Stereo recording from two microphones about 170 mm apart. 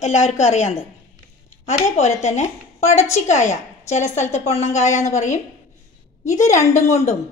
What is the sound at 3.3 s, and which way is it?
A woman's voice, 45° left (ahead or behind).